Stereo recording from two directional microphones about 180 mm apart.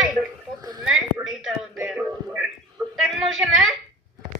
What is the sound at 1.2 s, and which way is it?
Speech, centre (ahead or behind).